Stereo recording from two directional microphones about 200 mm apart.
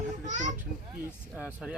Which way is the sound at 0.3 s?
35° right (ahead or behind).